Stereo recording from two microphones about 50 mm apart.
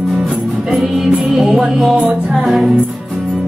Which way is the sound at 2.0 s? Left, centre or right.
Right.